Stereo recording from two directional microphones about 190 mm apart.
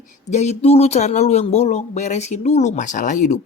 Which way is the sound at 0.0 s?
35° left (ahead or behind).